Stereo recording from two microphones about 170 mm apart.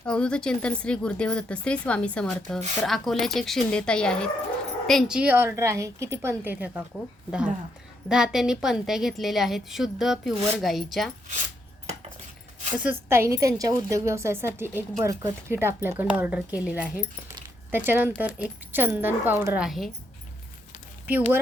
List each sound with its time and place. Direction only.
0.0 s a woman's voice: 5° left (ahead or behind)
12.7 s a woman's voice: 10° right (ahead or behind)